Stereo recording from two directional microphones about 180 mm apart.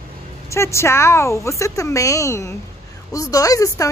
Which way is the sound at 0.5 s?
15° left (ahead or behind).